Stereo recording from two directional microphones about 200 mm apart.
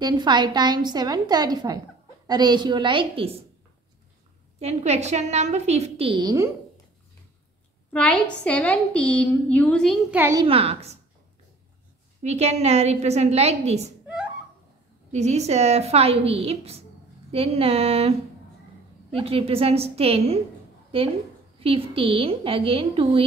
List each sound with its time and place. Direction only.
0.0 s a woman's voice: 20° right (ahead or behind)
4.6 s a woman's voice: 35° right (ahead or behind); by 6.5 s 15° right (ahead or behind)
7.9 s a woman's voice: 5° left (ahead or behind)
10.1 s a woman's voice: 10° right (ahead or behind)
10.4 s a woman's voice: 30° right (ahead or behind)
12.2 s a woman's voice: 35° right (ahead or behind)
15.1 s a woman's voice: 35° right (ahead or behind)
19.1 s a woman's voice: 30° right (ahead or behind)
21.5 s a woman's voice: 30° right (ahead or behind)